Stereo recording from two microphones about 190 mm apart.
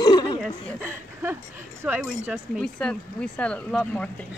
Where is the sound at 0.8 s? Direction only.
10° right (ahead or behind).